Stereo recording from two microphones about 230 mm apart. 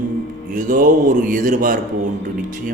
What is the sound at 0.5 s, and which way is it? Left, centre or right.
A man's voice, right.